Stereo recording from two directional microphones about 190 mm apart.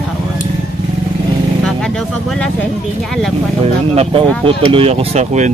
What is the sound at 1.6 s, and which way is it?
Speech, 5° left (ahead or behind).